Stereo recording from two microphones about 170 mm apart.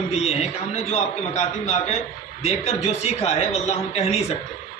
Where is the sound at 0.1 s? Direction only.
40° left (ahead or behind).